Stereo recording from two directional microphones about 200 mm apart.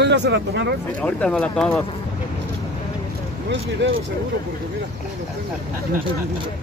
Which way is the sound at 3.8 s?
65° right (ahead or behind).